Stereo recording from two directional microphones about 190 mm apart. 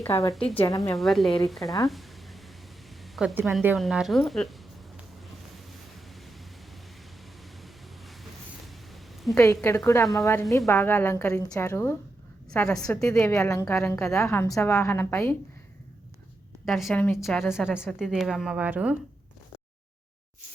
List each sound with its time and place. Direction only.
0.0 s a woman's voice: 15° left (ahead or behind)
0.8 s a woman's voice: centre (ahead or behind)
1.9 s a sound: centre (ahead or behind)
3.0 s a woman's voice: centre (ahead or behind)
7.6 s a sound: centre (ahead or behind)
9.3 s a woman's voice: 15° left (ahead or behind)
13.4 s a woman's voice: 15° left (ahead or behind)
16.6 s a woman's voice: centre (ahead or behind)
17.2 s a woman's voice: centre (ahead or behind)